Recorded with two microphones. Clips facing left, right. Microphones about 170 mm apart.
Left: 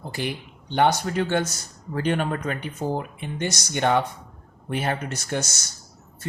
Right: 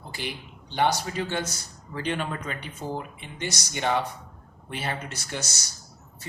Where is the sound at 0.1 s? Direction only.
50° left (ahead or behind).